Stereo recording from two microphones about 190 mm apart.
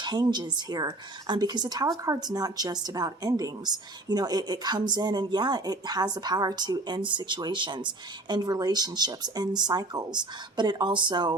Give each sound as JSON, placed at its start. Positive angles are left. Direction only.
{"t": 0.0, "sound": "speech", "side_deg": -20}